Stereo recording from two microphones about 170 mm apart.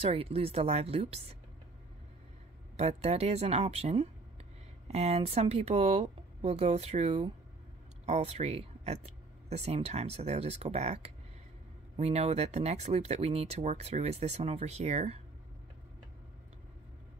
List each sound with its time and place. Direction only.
0.0 s speech: 35° right (ahead or behind)
2.8 s speech: 40° right (ahead or behind)